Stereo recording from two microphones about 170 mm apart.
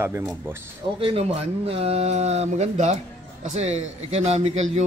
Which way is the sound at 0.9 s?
35° right (ahead or behind).